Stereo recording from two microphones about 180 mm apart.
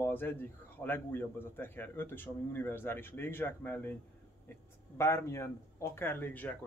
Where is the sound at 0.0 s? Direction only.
10° left (ahead or behind).